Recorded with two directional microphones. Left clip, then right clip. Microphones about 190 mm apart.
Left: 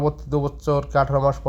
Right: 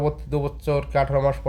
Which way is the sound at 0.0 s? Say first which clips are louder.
Left 2 dB; 5° left (ahead or behind).